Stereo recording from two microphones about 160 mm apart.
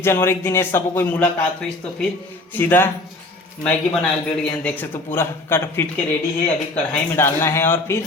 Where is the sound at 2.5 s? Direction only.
10° left (ahead or behind).